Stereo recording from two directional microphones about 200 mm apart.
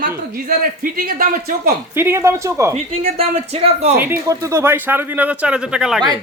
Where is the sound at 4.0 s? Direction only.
15° right (ahead or behind).